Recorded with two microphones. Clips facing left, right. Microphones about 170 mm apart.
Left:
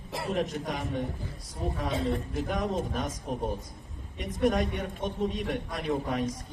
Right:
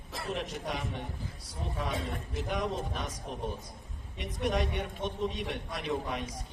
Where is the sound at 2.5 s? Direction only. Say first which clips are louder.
Left 2 dB; 45° left (ahead or behind).